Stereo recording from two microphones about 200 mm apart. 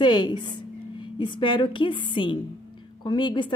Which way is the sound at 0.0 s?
20° left (ahead or behind).